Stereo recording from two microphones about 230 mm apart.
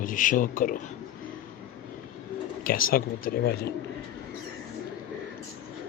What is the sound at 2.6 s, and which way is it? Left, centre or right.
Speech, left.